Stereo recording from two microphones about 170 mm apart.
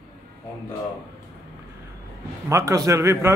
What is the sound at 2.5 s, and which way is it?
Speech, 20° right (ahead or behind).